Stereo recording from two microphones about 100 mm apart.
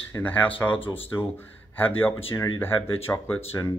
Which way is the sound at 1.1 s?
40° left (ahead or behind).